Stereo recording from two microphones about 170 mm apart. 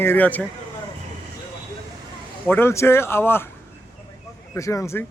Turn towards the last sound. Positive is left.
turn(degrees=15)  # may be behind; listen again after turning